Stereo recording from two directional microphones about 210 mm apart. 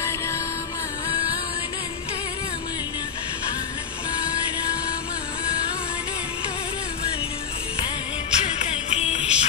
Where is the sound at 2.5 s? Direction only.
20° left (ahead or behind).